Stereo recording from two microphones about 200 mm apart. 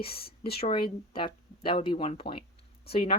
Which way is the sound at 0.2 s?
50° left (ahead or behind).